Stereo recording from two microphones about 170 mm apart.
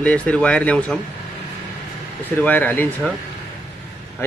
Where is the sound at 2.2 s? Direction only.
10° left (ahead or behind).